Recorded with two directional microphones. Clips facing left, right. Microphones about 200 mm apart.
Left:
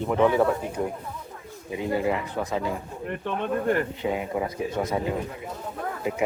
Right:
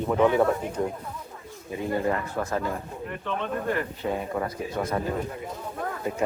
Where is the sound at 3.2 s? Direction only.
50° left (ahead or behind).